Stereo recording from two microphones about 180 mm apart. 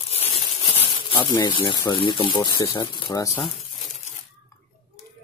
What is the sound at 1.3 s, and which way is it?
Speech, 25° left (ahead or behind).